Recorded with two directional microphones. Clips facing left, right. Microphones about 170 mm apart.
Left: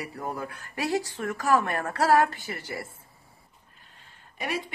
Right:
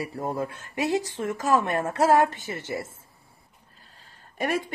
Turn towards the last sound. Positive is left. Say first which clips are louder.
# right 5 dB
turn(degrees=-50)  # may be behind; listen again after turning